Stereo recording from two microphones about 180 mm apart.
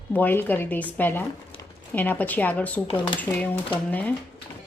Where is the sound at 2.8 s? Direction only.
25° left (ahead or behind).